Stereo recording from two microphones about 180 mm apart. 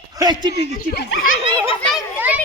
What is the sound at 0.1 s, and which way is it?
Speech, 20° right (ahead or behind).